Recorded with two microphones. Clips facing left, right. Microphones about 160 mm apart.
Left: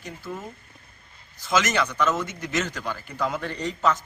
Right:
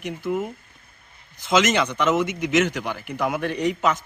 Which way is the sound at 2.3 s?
75° right (ahead or behind).